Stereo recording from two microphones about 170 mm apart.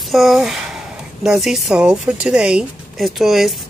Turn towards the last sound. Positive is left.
turn(degrees=0)  # may be behind; listen again after turning